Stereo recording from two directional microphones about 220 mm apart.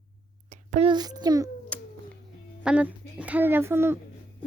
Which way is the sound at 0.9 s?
20° right (ahead or behind).